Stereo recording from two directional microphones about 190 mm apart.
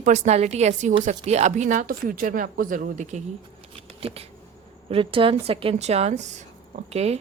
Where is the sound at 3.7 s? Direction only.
30° right (ahead or behind).